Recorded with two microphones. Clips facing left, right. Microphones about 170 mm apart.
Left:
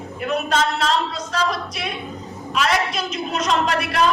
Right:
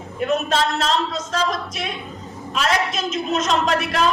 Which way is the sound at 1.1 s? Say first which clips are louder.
Even; 45° right (ahead or behind).